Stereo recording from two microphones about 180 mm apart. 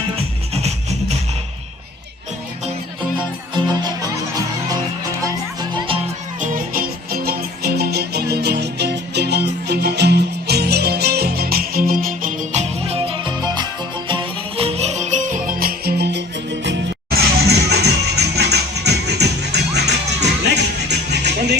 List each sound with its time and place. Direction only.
0.5 s music: 35° right (ahead or behind)
3.5 s music: 25° right (ahead or behind)
5.5 s music: 25° right (ahead or behind)
6.4 s music: 50° right (ahead or behind); by 21.6 s 65° right (ahead or behind)